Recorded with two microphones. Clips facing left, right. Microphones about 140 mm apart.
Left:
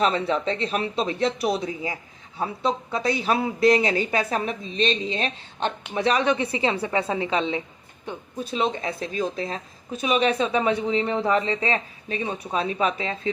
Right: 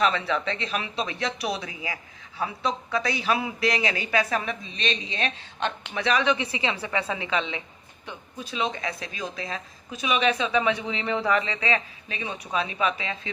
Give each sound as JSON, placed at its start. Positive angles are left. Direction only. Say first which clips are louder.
{"t": 0.0, "sound": "a woman's voice", "louder": "left 2 dB", "side_deg": 35}